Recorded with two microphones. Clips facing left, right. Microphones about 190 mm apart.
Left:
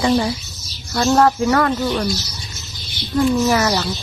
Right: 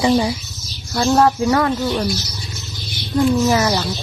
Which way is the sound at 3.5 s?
20° right (ahead or behind).